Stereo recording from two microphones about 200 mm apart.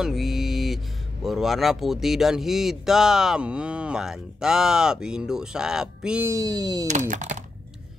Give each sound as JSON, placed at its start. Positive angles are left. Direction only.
{"t": 0.0, "sound": "speech", "side_deg": 0}
{"t": 6.3, "sound": "speech", "side_deg": -20}
{"t": 6.9, "sound": "speech", "side_deg": -35}